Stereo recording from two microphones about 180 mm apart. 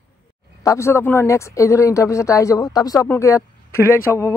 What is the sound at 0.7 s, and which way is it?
Speech, 15° left (ahead or behind).